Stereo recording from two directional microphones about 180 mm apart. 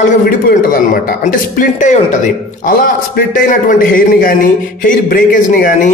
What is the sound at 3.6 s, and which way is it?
Speech, 50° left (ahead or behind).